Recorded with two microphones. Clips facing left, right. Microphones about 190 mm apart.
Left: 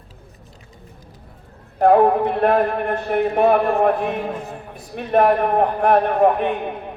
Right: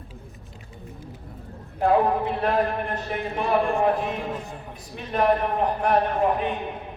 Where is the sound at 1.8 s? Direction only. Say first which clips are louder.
Left 7 dB; 55° left (ahead or behind).